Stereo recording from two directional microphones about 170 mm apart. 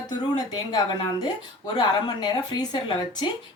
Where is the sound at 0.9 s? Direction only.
30° left (ahead or behind).